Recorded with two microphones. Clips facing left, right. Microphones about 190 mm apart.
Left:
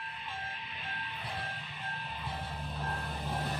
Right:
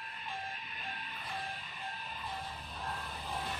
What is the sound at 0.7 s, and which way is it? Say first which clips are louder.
Music: left 2 dB; 45° right (ahead or behind).